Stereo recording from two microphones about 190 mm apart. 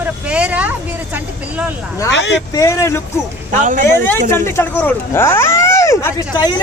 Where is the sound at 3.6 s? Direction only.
45° right (ahead or behind).